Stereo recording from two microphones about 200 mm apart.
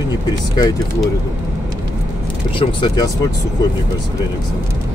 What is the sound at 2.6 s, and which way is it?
Speech, 25° left (ahead or behind).